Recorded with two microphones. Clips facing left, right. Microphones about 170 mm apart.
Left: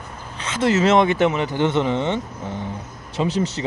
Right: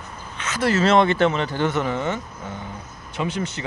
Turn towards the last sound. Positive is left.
turn(degrees=35)  # may be behind; listen again after turning